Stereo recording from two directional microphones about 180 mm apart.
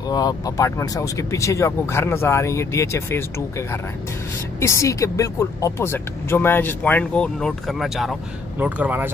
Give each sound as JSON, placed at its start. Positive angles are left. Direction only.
{"t": 0.1, "sound": "speech", "side_deg": 20}